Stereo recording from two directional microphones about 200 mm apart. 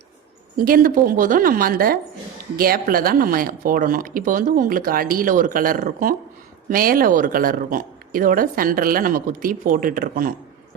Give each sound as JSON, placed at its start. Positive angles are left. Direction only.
{"t": 0.5, "sound": "speech", "side_deg": -45}